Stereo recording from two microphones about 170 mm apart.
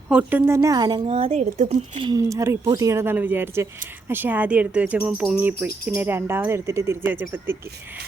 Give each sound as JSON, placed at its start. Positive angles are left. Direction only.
{"t": 0.1, "sound": "a woman's voice", "side_deg": -10}
{"t": 2.0, "sound": "a woman's voice", "side_deg": -20}